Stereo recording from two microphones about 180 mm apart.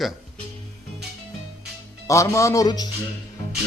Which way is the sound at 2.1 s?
15° left (ahead or behind).